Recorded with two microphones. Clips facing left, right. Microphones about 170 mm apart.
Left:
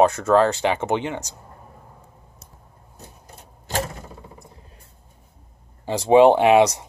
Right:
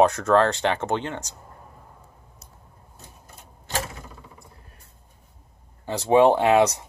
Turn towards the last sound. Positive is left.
turn(degrees=15)  # may be behind; listen again after turning